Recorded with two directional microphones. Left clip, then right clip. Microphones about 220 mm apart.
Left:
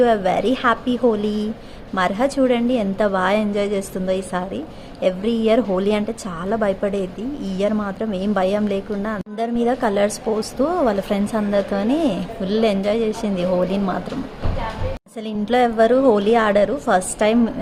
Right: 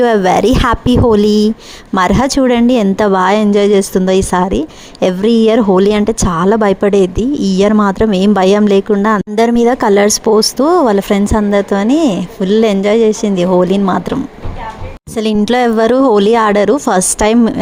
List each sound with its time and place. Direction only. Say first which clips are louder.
0.0 s a woman's voice: right 7 dB; 45° right (ahead or behind)
15.1 s speech: right 8 dB; 45° right (ahead or behind)